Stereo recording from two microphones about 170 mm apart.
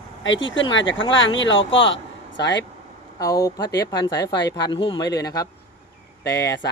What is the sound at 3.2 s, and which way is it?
Speech, 20° left (ahead or behind).